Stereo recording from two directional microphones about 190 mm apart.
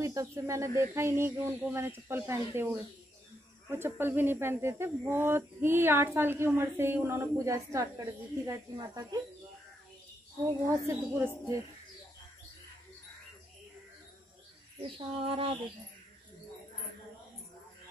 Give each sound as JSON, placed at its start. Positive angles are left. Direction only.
{"t": 0.0, "sound": "speech", "side_deg": -15}
{"t": 3.7, "sound": "speech", "side_deg": -10}
{"t": 10.7, "sound": "speech", "side_deg": -10}
{"t": 14.8, "sound": "a sound", "side_deg": -25}